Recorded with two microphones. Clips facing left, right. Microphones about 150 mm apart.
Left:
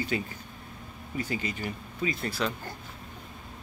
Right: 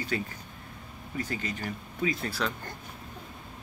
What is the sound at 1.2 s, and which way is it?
Speech, 10° left (ahead or behind).